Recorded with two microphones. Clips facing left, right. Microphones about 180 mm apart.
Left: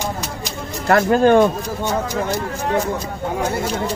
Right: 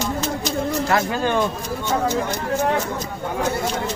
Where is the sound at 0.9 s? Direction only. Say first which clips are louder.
Left 12 dB; 55° left (ahead or behind).